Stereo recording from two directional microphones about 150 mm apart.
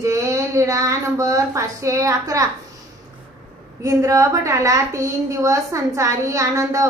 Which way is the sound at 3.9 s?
20° right (ahead or behind).